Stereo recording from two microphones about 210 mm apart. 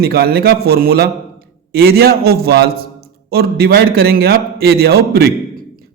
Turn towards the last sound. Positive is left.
turn(degrees=-50)  # may be behind; listen again after turning